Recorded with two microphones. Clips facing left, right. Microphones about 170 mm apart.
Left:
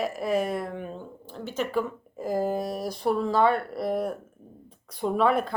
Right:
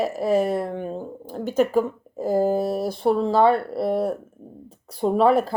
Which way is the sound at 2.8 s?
30° right (ahead or behind).